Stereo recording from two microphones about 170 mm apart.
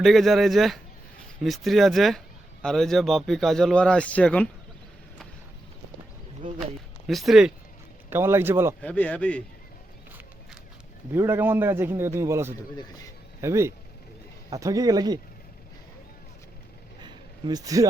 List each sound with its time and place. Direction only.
0.0 s speech: centre (ahead or behind)
7.1 s speech: centre (ahead or behind)
8.1 s a man's voice: 15° right (ahead or behind)
8.8 s speech: 10° left (ahead or behind)
11.1 s a man's voice: 15° right (ahead or behind)
17.0 s a sound: 25° right (ahead or behind)